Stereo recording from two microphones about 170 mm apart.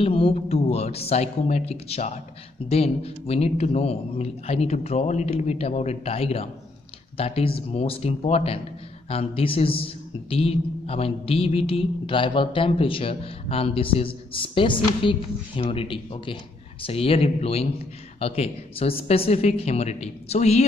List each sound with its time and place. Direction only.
0.0 s speech: 35° left (ahead or behind)